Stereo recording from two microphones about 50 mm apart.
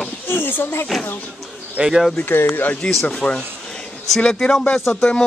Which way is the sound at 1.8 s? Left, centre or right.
Centre.